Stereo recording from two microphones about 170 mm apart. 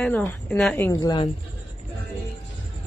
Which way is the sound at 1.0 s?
30° left (ahead or behind).